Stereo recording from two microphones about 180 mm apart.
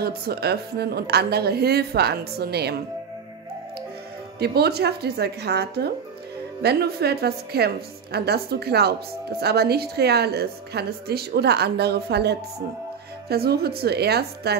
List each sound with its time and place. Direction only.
0.0 s a woman's voice: 60° right (ahead or behind)
4.4 s a woman's voice: 60° right (ahead or behind)